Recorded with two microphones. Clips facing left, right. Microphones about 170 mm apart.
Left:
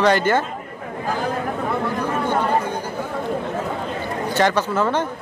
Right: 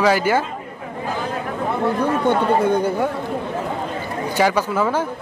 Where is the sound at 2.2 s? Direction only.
60° right (ahead or behind).